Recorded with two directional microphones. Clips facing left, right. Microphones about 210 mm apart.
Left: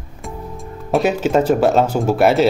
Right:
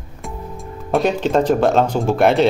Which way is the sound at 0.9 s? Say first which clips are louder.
Left 1 dB; 5° left (ahead or behind).